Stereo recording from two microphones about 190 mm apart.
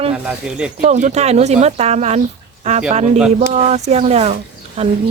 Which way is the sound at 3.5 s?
35° right (ahead or behind).